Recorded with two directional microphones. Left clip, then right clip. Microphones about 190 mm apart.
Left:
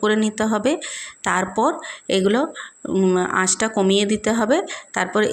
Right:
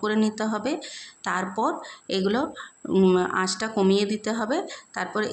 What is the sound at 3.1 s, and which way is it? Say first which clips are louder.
Speech: left 4 dB; 15° left (ahead or behind).